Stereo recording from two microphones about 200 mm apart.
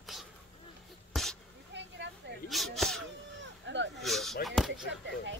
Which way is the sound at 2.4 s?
Centre (ahead or behind).